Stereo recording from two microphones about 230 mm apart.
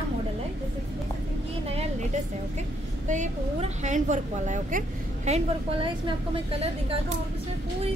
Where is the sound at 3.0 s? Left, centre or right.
Right.